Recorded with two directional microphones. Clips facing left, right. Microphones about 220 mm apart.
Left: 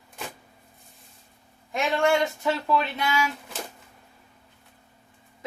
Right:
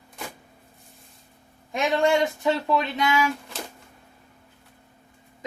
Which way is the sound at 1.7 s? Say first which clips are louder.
Right 2 dB; 20° right (ahead or behind).